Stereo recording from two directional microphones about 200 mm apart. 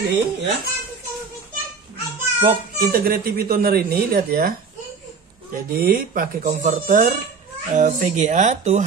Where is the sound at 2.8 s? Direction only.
50° right (ahead or behind).